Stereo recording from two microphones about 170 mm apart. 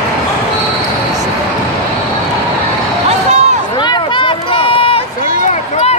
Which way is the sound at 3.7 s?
25° left (ahead or behind).